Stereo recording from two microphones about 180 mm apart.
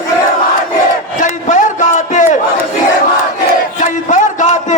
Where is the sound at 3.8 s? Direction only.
45° left (ahead or behind).